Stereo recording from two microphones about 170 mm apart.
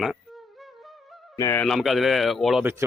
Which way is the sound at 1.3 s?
15° left (ahead or behind).